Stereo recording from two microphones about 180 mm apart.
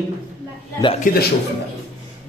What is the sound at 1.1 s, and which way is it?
Speech, 50° left (ahead or behind).